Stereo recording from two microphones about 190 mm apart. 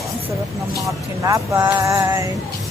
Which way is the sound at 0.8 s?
15° right (ahead or behind).